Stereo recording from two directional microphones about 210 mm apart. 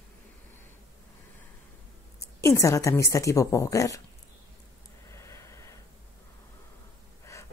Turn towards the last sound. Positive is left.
turn(degrees=15)  # may be behind; listen again after turning